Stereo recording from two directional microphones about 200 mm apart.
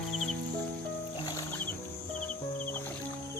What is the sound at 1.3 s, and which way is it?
Music, 15° left (ahead or behind).